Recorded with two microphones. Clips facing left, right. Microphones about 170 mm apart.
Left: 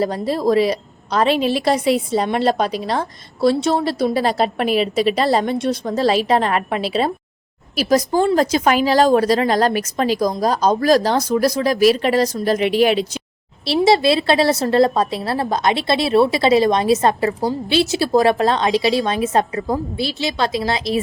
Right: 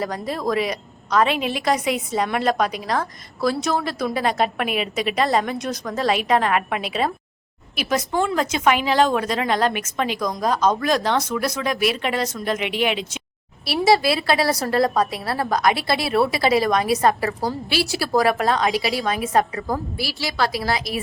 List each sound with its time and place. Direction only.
0.0 s a woman's voice: 30° left (ahead or behind)
13.7 s a woman's voice: 25° left (ahead or behind)